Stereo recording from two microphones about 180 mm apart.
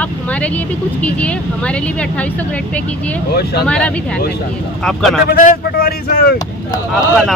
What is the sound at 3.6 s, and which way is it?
Speech, 5° left (ahead or behind).